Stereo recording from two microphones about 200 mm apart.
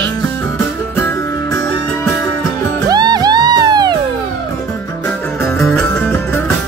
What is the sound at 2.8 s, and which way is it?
Music, 20° right (ahead or behind).